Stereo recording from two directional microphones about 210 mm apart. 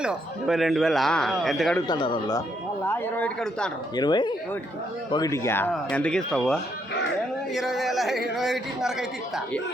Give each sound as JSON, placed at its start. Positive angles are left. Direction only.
{"t": 0.0, "sound": "speech", "side_deg": -5}
{"t": 1.9, "sound": "speech", "side_deg": 20}
{"t": 2.8, "sound": "speech", "side_deg": 10}
{"t": 3.9, "sound": "speech", "side_deg": 20}